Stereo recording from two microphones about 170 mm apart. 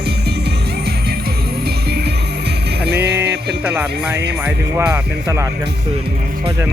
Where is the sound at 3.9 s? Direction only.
80° right.